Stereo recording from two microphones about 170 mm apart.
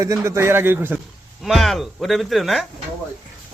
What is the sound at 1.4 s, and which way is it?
Speech, centre (ahead or behind).